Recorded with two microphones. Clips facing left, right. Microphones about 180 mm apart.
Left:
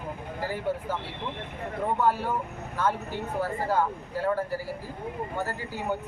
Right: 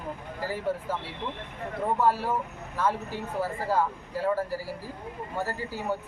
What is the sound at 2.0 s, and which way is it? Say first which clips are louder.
Speech: right 1 dB; centre (ahead or behind).